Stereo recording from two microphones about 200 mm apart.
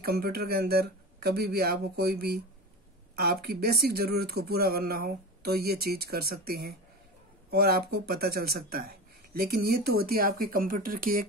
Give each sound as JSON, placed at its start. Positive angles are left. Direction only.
{"t": 0.0, "sound": "speech", "side_deg": -50}